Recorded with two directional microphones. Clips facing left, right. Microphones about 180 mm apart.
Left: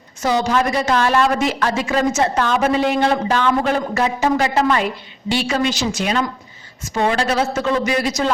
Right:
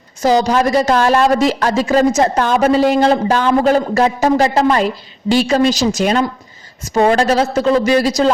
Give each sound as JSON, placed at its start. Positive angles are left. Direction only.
{"t": 0.2, "sound": "a woman's voice", "side_deg": -35}